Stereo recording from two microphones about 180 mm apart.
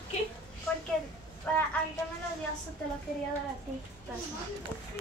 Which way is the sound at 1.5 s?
10° left (ahead or behind).